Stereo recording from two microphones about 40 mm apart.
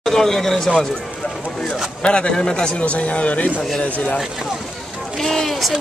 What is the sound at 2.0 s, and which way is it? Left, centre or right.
Speech, left.